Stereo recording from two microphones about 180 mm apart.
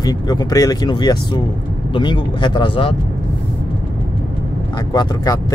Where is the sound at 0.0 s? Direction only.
20° left (ahead or behind).